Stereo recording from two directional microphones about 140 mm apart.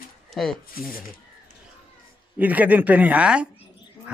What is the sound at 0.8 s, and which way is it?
Speech, 90° left.